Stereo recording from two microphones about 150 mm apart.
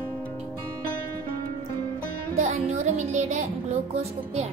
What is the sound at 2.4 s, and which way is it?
Music, 50° right (ahead or behind).